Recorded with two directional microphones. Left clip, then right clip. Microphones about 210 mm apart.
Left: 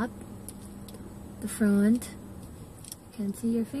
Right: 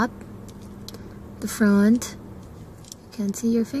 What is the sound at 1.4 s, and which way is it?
Speech, 20° right (ahead or behind).